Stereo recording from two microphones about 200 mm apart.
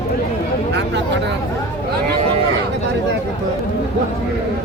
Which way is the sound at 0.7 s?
60° right (ahead or behind).